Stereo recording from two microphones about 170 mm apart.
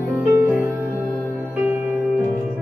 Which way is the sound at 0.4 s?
10° right (ahead or behind).